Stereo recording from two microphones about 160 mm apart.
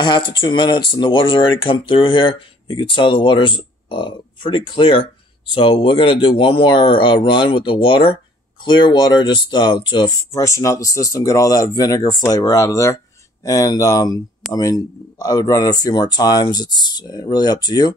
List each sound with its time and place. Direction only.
0.0 s speech: 30° left (ahead or behind)